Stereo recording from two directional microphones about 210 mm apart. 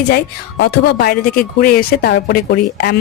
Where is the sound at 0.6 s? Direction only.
50° left (ahead or behind).